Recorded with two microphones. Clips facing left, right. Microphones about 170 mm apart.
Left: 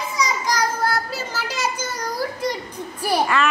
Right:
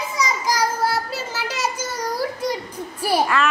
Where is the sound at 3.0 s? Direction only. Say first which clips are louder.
Even; centre (ahead or behind).